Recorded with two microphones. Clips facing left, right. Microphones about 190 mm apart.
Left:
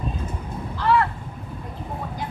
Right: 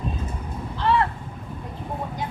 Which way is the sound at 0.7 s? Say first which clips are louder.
Left 1 dB; 25° right (ahead or behind).